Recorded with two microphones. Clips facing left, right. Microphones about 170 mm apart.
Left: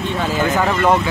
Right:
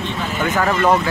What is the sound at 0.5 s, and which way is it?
Speech, 5° left (ahead or behind).